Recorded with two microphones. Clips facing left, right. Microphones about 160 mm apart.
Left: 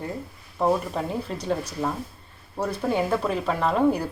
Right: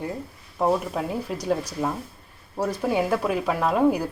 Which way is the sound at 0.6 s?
5° right (ahead or behind).